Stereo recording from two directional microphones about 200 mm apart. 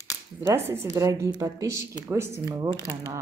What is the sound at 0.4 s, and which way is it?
Speech, 10° right (ahead or behind).